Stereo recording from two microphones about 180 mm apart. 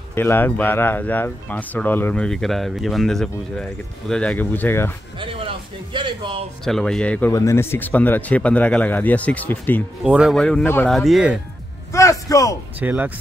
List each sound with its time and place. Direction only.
0.1 s speech: 10° left (ahead or behind)
5.9 s speech: 25° right (ahead or behind)
6.6 s speech: centre (ahead or behind)
10.0 s speech: 5° right (ahead or behind)
11.0 s speech: centre (ahead or behind)
11.9 s a man's voice: 15° left (ahead or behind)
12.7 s speech: 10° right (ahead or behind)